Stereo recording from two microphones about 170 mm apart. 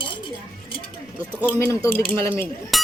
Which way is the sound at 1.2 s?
10° right (ahead or behind).